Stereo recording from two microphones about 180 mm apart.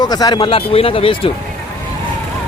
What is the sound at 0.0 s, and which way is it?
Speech, 20° left (ahead or behind).